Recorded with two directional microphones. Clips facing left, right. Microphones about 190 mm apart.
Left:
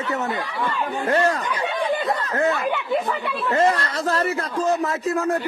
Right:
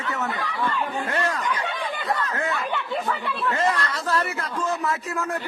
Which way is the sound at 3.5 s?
40° left (ahead or behind).